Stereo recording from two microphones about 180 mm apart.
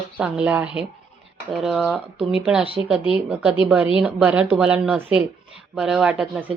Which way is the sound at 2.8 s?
15° right (ahead or behind).